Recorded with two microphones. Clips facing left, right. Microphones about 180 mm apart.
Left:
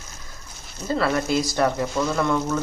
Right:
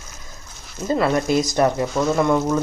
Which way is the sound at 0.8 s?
20° right (ahead or behind).